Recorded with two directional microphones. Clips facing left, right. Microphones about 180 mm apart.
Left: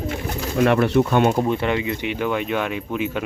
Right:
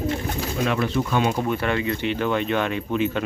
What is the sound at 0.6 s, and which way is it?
Speech, 60° left (ahead or behind).